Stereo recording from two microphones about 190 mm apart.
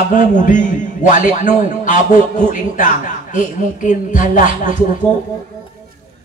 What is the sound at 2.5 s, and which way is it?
A man's voice, 45° left (ahead or behind).